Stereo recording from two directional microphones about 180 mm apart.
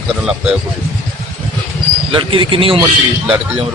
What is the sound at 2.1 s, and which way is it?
Speech, 30° right (ahead or behind).